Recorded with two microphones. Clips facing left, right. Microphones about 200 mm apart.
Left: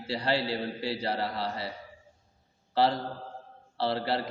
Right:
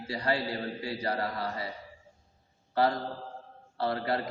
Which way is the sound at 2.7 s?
30° left (ahead or behind).